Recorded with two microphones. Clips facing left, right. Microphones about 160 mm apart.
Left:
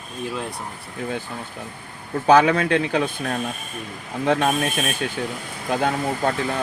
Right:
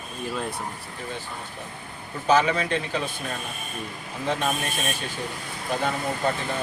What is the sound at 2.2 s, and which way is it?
Speech, 60° left (ahead or behind).